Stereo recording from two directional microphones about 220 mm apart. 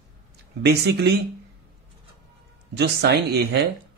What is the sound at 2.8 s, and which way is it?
Speech, 50° right (ahead or behind).